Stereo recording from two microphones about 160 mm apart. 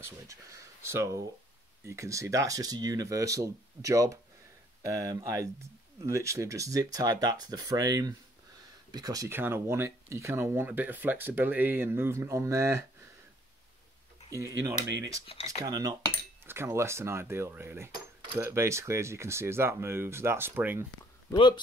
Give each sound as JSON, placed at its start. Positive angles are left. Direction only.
{"t": 0.0, "sound": "speech", "side_deg": -20}
{"t": 14.3, "sound": "speech", "side_deg": -20}
{"t": 15.3, "sound": "speech", "side_deg": 35}
{"t": 15.6, "sound": "speech", "side_deg": -25}
{"t": 21.3, "sound": "speech", "side_deg": 25}